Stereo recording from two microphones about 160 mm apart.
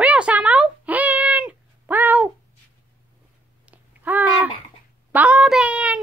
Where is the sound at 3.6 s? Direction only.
10° right (ahead or behind).